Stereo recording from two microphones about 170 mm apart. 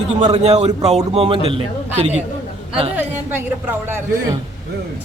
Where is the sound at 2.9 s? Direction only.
10° right (ahead or behind).